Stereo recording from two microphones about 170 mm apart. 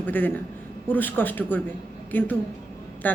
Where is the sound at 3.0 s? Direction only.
10° left (ahead or behind).